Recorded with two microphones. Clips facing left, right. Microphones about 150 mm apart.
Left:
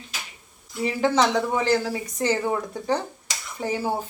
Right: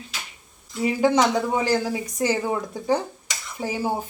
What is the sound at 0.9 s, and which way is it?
Speech, 10° right (ahead or behind).